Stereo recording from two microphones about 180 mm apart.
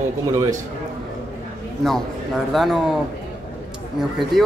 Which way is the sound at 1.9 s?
Centre (ahead or behind).